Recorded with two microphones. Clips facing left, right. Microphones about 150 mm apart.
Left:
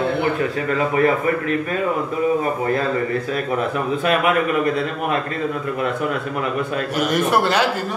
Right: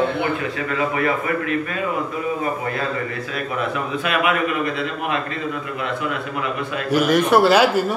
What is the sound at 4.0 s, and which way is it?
Speech, 40° left (ahead or behind).